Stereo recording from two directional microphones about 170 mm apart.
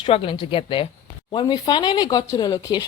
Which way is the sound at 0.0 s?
30° left (ahead or behind).